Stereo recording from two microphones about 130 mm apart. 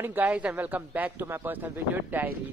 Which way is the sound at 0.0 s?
15° right (ahead or behind).